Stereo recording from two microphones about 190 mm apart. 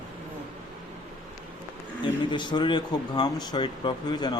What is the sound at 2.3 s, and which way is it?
Speech, 25° left (ahead or behind).